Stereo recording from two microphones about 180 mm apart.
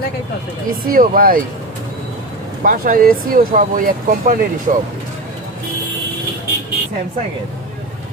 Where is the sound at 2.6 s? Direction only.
50° right (ahead or behind).